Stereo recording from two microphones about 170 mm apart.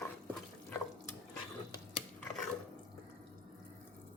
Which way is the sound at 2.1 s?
Centre (ahead or behind).